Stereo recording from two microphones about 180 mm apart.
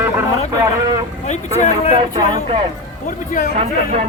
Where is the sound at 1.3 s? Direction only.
40° left (ahead or behind).